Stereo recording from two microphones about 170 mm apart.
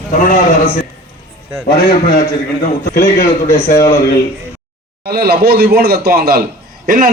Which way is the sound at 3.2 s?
15° left (ahead or behind).